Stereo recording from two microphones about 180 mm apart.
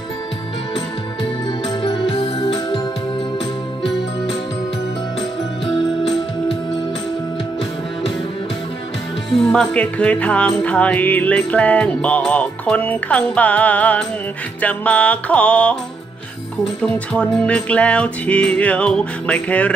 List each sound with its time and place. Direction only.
1.8 s music: 25° left (ahead or behind)
9.3 s music: 5° left (ahead or behind)